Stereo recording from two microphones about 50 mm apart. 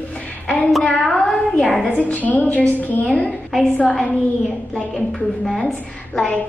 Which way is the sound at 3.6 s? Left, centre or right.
Left.